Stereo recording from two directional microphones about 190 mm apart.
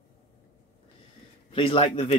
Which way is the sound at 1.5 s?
25° left (ahead or behind).